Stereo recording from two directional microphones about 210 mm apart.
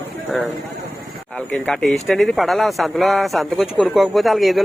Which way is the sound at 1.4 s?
5° left (ahead or behind).